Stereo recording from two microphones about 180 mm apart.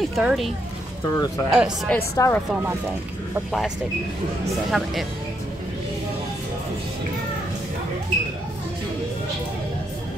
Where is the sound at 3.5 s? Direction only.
Centre (ahead or behind).